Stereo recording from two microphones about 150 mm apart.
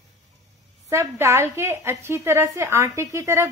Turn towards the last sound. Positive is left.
turn(degrees=-20)  # may be behind; listen again after turning